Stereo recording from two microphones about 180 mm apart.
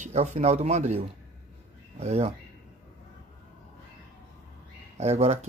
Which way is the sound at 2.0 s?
35° right (ahead or behind).